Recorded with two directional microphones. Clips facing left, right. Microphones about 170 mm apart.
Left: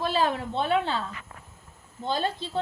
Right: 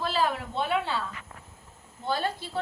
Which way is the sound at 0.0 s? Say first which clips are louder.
Left 2 dB; 25° left (ahead or behind).